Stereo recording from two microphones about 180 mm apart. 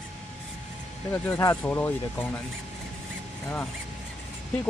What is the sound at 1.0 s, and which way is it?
Speech, 10° left (ahead or behind).